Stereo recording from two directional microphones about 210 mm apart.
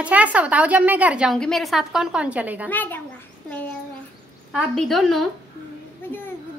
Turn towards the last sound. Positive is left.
turn(degrees=10)  # may be behind; listen again after turning